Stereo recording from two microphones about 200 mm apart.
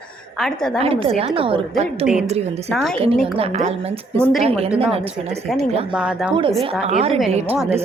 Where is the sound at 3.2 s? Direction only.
30° right (ahead or behind).